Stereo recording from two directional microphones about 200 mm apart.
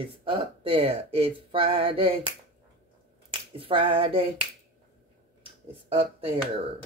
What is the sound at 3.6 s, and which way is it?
Speech, 25° right (ahead or behind).